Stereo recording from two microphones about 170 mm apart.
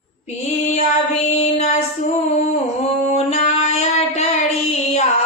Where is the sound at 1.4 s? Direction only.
40° left (ahead or behind).